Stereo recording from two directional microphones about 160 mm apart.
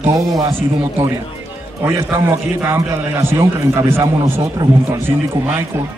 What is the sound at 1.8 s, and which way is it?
A man's voice, 15° right (ahead or behind).